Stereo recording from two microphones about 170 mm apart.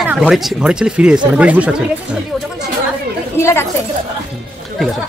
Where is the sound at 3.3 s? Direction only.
15° left (ahead or behind).